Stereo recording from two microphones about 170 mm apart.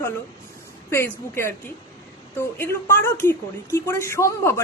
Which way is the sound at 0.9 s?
15° left (ahead or behind).